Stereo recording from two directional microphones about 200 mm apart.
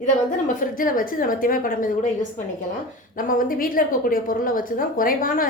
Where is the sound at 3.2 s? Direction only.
45° left (ahead or behind).